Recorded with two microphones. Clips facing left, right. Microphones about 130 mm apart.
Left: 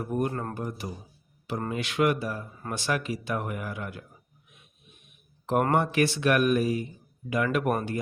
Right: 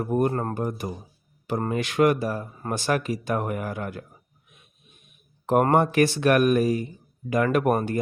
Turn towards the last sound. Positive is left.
turn(degrees=-45)  # may be behind; listen again after turning